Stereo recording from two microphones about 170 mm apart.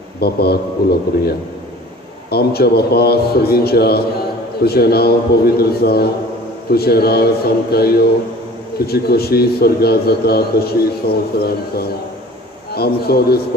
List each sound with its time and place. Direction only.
0.2 s a man's voice: 70° left (ahead or behind)
12.7 s a man's voice: 65° left (ahead or behind)